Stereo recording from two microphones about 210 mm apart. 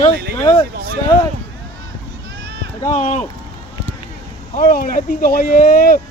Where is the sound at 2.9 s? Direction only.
35° left (ahead or behind).